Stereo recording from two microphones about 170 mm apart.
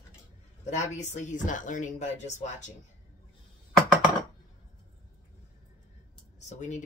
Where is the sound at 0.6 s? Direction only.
45° left (ahead or behind).